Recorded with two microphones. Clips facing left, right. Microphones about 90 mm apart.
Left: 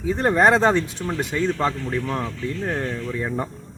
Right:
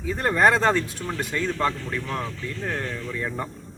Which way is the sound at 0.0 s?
25° left (ahead or behind).